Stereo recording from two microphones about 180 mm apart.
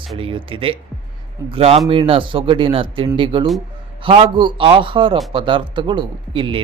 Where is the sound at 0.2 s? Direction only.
30° right (ahead or behind).